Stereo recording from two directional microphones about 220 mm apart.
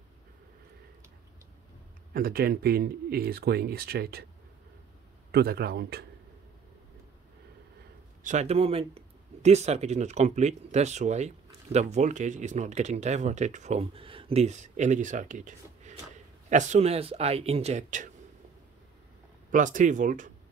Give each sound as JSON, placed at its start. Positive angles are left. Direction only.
{"t": 2.1, "sound": "speech", "side_deg": -40}
{"t": 5.3, "sound": "speech", "side_deg": -45}
{"t": 8.2, "sound": "speech", "side_deg": -35}
{"t": 19.5, "sound": "speech", "side_deg": -35}